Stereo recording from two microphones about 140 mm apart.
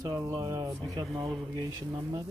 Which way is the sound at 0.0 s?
25° right (ahead or behind).